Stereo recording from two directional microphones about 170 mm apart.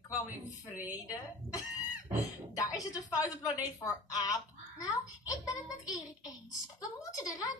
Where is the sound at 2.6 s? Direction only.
20° left (ahead or behind).